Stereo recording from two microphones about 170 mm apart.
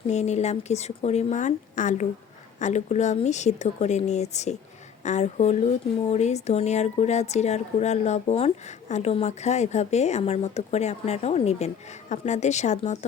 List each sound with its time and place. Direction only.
0.1 s speech: 40° left (ahead or behind)